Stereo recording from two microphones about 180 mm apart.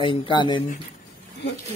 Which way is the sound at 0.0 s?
25° left (ahead or behind).